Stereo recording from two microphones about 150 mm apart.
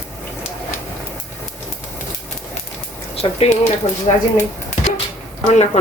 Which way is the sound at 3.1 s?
45° left (ahead or behind).